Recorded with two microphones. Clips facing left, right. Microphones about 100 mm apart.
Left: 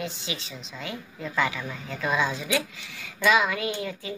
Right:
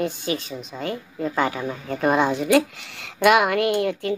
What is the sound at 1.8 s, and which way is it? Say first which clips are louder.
A woman's voice: right 7 dB; 50° right (ahead or behind).